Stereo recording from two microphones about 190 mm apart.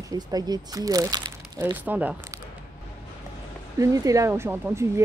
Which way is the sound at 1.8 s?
10° right (ahead or behind).